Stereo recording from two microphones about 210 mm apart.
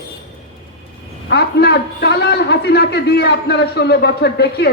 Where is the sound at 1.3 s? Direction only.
50° left (ahead or behind).